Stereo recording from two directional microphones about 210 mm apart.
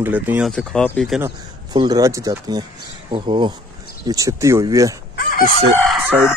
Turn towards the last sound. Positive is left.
turn(degrees=-5)  # may be behind; listen again after turning